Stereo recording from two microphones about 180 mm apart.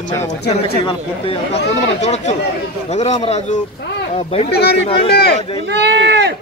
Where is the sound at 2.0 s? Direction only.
40° left (ahead or behind).